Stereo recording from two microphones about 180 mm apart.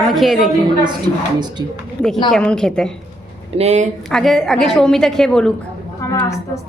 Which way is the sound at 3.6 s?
40° right (ahead or behind).